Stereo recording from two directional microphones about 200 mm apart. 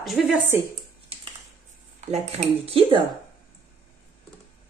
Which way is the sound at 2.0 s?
35° right (ahead or behind).